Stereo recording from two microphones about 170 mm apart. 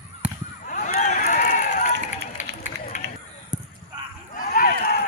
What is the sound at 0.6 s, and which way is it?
Run, 50° left (ahead or behind).